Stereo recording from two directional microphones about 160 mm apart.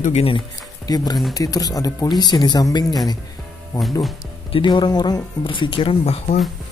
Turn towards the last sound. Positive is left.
turn(degrees=40)  # may be behind; listen again after turning